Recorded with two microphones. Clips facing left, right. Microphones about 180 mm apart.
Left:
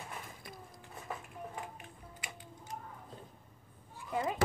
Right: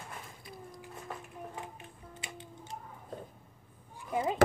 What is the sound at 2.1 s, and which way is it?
Music, 25° right (ahead or behind).